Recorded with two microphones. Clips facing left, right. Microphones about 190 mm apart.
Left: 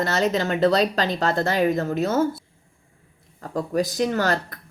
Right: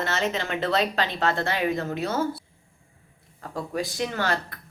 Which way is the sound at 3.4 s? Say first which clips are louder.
Left 6 dB; 40° left (ahead or behind).